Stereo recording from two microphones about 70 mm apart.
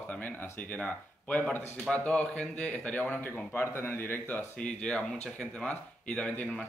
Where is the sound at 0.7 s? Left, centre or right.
Centre.